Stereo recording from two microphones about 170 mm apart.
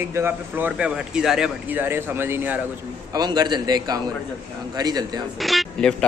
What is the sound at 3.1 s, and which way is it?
A man's voice, 25° right (ahead or behind).